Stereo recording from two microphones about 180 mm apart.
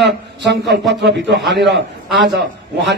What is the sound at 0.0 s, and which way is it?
A man's voice, 70° right (ahead or behind).